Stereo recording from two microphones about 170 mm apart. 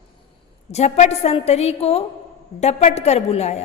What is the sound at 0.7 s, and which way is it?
A woman's voice, 40° left (ahead or behind).